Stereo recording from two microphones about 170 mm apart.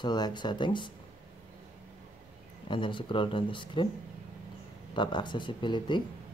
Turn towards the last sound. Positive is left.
turn(degrees=25)  # may be behind; listen again after turning